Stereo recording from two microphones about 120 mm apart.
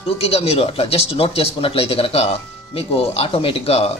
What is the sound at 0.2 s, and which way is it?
Speech, 55° left (ahead or behind).